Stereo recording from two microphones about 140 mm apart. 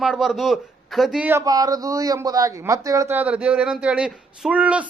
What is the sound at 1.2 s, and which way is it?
Speech, 25° right (ahead or behind).